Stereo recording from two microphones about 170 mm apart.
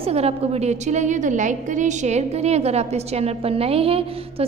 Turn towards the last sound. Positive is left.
turn(degrees=-35)  # may be behind; listen again after turning